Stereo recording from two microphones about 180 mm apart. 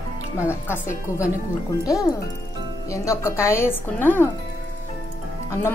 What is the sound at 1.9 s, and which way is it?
A woman's voice, 20° left (ahead or behind).